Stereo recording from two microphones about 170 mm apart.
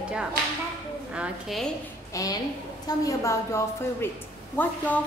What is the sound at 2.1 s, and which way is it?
A woman's voice, 20° left (ahead or behind).